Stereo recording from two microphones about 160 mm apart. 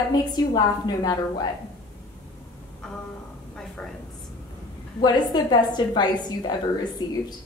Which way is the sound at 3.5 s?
5° left (ahead or behind).